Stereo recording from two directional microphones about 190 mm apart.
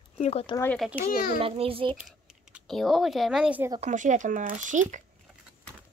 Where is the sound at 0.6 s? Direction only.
10° left (ahead or behind).